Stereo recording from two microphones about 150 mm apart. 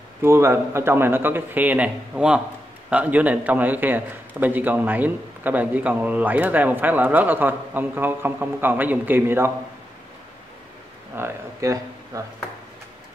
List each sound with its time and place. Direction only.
0.2 s a man's voice: 15° right (ahead or behind)
11.1 s speech: 20° right (ahead or behind)